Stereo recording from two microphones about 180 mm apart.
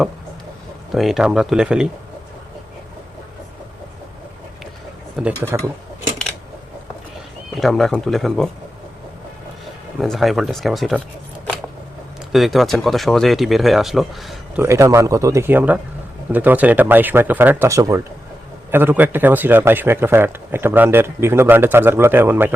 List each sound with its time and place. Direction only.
0.9 s speech: centre (ahead or behind)
5.2 s a man's voice: 10° right (ahead or behind)
7.6 s speech: centre (ahead or behind)
10.0 s speech: centre (ahead or behind)
12.3 s speech: centre (ahead or behind)
14.6 s a man's voice: 15° right (ahead or behind)